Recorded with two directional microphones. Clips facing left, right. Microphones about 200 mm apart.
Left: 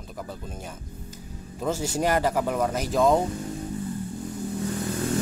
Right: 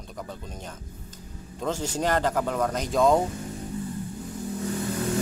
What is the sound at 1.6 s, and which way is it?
Speech, 10° left (ahead or behind).